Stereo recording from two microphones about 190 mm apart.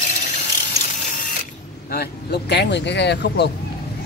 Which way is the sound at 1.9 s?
60° left (ahead or behind).